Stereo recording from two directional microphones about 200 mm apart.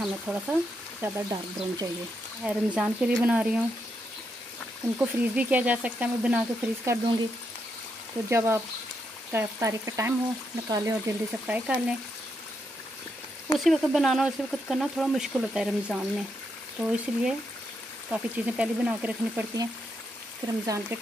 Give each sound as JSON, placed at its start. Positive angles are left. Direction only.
{"t": 0.0, "sound": "speech", "side_deg": -5}
{"t": 1.0, "sound": "speech", "side_deg": -15}
{"t": 2.4, "sound": "speech", "side_deg": -5}
{"t": 4.9, "sound": "speech", "side_deg": -10}
{"t": 8.3, "sound": "speech", "side_deg": -15}
{"t": 13.7, "sound": "speech", "side_deg": 0}
{"t": 20.6, "sound": "speech", "side_deg": -15}